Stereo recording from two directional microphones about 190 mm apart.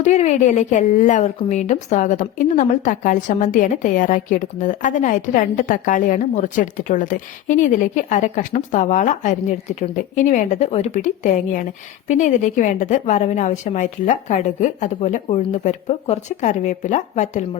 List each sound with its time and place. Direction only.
0.0 s a woman's voice: 35° left (ahead or behind)